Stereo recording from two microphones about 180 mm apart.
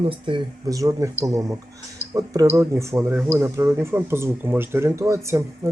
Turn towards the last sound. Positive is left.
turn(degrees=-15)  # may be behind; listen again after turning